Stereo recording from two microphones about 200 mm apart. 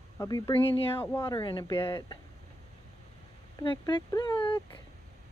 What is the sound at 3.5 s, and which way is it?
Speech, 20° left (ahead or behind).